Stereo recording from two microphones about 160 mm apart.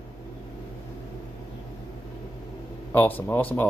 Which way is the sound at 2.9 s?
10° left (ahead or behind).